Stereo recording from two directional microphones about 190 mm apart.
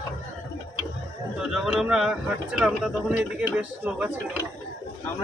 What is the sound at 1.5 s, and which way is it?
Speech, centre (ahead or behind).